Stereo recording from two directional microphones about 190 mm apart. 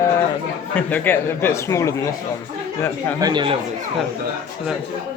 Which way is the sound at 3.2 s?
20° right (ahead or behind).